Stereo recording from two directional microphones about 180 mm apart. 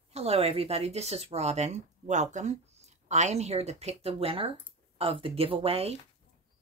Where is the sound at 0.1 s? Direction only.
35° right (ahead or behind).